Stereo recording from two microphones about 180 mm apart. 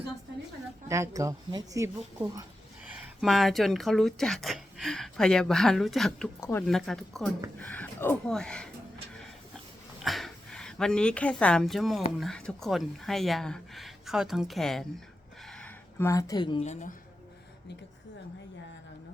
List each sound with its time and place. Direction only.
0.9 s speech: 15° right (ahead or behind)
2.9 s speech: centre (ahead or behind)
6.4 s speech: 15° left (ahead or behind)
6.7 s speech: centre (ahead or behind)
10.0 s speech: centre (ahead or behind)
15.4 s a sound: 5° left (ahead or behind); by 16.6 s 25° left (ahead or behind)